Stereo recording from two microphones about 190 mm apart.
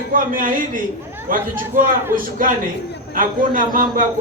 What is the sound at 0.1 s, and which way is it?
A man's voice, 45° right (ahead or behind).